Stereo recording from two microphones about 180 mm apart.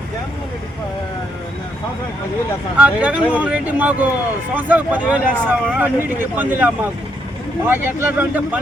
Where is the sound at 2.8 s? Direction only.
5° right (ahead or behind).